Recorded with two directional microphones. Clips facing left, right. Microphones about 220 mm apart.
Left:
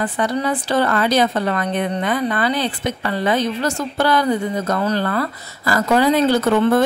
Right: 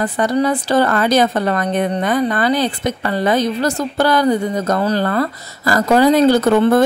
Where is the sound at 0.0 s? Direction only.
40° right (ahead or behind).